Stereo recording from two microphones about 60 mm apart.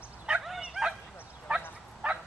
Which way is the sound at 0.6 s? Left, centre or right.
Centre.